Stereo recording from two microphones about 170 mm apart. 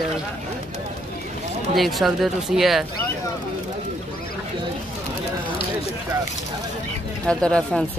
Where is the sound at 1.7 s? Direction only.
Centre (ahead or behind).